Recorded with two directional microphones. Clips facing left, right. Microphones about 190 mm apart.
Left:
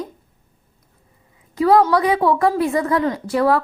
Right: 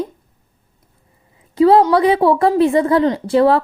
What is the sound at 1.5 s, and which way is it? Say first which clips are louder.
A woman's voice: right 4 dB; 30° right (ahead or behind).